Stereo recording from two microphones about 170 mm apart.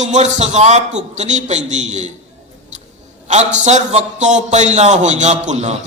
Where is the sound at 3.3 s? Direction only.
40° right (ahead or behind).